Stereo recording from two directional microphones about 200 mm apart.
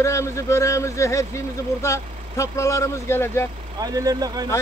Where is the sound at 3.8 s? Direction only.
20° right (ahead or behind).